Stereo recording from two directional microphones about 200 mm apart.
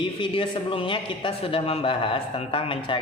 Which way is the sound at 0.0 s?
25° left (ahead or behind).